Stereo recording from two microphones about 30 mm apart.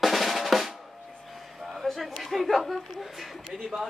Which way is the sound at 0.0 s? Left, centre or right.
Centre.